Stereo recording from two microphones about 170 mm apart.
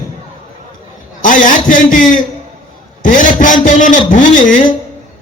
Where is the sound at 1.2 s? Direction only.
50° left (ahead or behind).